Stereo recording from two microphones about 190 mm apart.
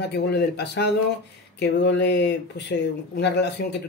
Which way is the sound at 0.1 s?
60° left (ahead or behind).